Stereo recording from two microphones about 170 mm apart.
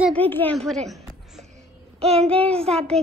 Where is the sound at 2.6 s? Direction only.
5° left (ahead or behind).